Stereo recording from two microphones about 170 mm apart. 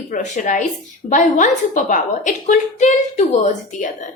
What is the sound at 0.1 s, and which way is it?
A woman's voice, 50° left (ahead or behind).